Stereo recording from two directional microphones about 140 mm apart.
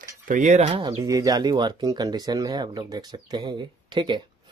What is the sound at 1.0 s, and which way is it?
Speech, 25° right (ahead or behind).